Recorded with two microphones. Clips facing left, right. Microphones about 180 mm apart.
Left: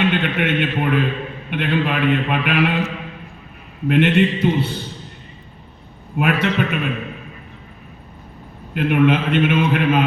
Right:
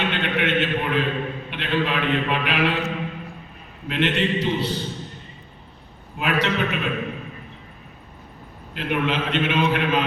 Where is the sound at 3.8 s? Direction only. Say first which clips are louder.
Left 7 dB; 50° left (ahead or behind).